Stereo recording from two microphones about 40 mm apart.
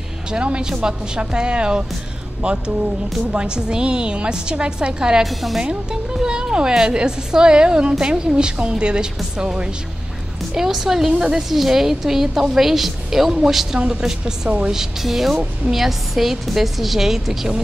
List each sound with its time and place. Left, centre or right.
0.3 s a woman's voice: right
3.3 s a woman's voice: right
5.2 s a woman's voice: centre
6.2 s a woman's voice: right
10.5 s a woman's voice: centre